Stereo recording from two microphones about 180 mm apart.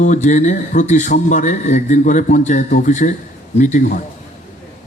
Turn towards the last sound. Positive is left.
turn(degrees=45)  # may be behind; listen again after turning